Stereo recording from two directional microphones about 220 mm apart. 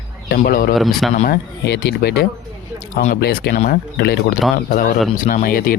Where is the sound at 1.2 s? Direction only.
45° left (ahead or behind).